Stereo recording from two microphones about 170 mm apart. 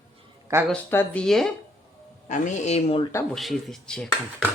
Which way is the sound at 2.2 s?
45° left (ahead or behind).